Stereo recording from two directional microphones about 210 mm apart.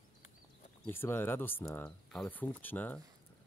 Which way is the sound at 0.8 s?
10° left (ahead or behind).